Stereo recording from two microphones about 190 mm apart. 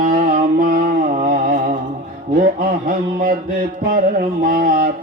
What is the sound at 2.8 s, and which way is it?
Mantra, 45° right (ahead or behind).